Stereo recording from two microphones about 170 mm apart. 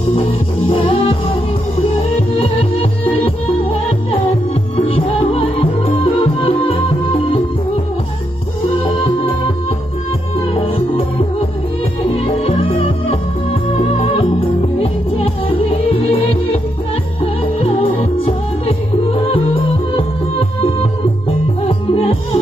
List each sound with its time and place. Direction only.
0.7 s music: 30° left (ahead or behind)
8.8 s music: 35° left (ahead or behind)
10.5 s music: 35° left (ahead or behind)
12.1 s music: 30° left (ahead or behind)
21.6 s music: 35° left (ahead or behind)